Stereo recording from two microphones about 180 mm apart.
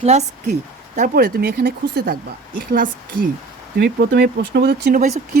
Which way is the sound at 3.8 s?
65° right (ahead or behind).